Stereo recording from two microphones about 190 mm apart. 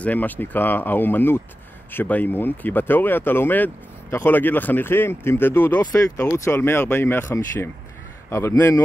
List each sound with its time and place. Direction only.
0.0 s speech: 10° left (ahead or behind)